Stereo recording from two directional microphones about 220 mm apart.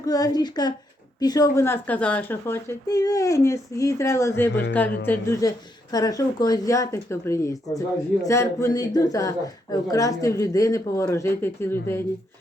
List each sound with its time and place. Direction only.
0.0 s a woman's voice: 15° left (ahead or behind)